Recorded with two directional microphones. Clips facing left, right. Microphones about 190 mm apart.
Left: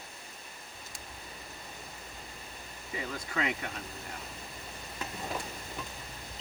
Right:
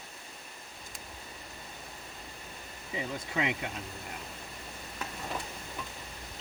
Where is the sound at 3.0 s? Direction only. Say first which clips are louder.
Right 2 dB; 20° right (ahead or behind).